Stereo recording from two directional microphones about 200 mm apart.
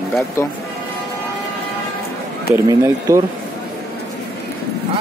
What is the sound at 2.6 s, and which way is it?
Speech, 15° right (ahead or behind).